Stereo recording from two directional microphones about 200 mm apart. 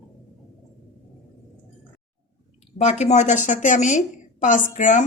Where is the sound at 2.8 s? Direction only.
35° left (ahead or behind).